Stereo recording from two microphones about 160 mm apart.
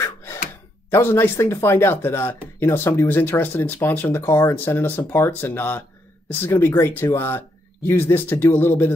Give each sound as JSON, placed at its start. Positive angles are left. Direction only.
{"t": 0.0, "sound": "gasp", "side_deg": 15}
{"t": 0.8, "sound": "speech", "side_deg": 15}